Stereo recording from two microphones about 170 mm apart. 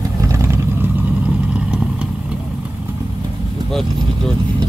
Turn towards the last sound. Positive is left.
turn(degrees=0)  # may be behind; listen again after turning